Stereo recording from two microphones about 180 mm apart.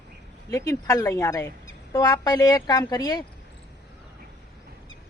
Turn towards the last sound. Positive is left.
turn(degrees=20)  # may be behind; listen again after turning